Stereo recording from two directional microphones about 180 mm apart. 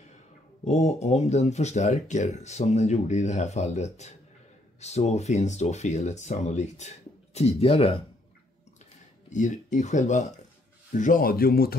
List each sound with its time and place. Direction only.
0.7 s speech: 40° left (ahead or behind)
9.3 s speech: 45° left (ahead or behind)